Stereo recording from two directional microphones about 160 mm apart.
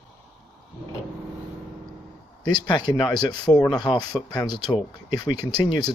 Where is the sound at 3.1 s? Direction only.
25° left (ahead or behind).